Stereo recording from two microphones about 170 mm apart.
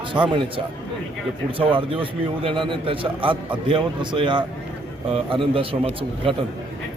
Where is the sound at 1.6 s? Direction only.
30° right (ahead or behind).